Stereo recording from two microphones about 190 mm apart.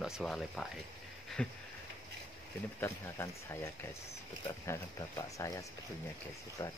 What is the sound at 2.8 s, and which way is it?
Speech, 15° left (ahead or behind).